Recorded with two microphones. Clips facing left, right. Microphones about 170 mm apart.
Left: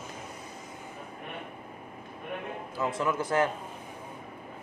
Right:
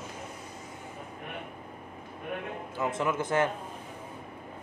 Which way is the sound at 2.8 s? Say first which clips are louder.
Even; 25° right (ahead or behind).